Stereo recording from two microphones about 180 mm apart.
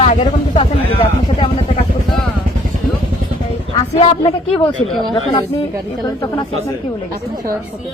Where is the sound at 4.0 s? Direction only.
30° left (ahead or behind).